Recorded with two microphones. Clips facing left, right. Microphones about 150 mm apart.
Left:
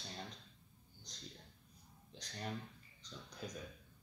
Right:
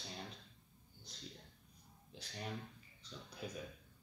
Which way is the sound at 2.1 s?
5° right (ahead or behind).